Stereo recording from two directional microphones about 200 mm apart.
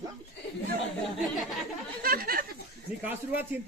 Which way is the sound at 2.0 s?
50° right (ahead or behind).